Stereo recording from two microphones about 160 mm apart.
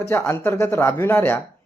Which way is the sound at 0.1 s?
15° left (ahead or behind).